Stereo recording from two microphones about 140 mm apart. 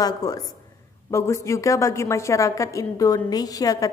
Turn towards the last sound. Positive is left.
turn(degrees=25)  # may be behind; listen again after turning